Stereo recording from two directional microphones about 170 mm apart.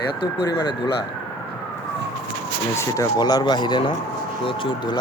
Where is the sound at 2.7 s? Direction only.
15° left (ahead or behind).